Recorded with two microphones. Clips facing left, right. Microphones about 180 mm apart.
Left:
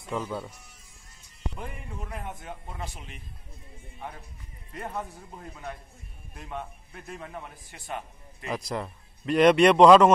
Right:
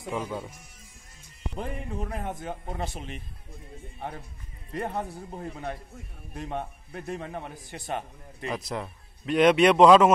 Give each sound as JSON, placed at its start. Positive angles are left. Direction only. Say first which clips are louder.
{"t": 0.1, "sound": "speech", "louder": "even", "side_deg": -10}
{"t": 1.5, "sound": "a man's voice", "louder": "right 6 dB", "side_deg": -40}
{"t": 4.7, "sound": "a man's voice", "louder": "right 4 dB", "side_deg": -40}
{"t": 6.5, "sound": "a man's voice", "louder": "right 2 dB", "side_deg": -35}
{"t": 8.5, "sound": "a man's voice", "louder": "even", "side_deg": 0}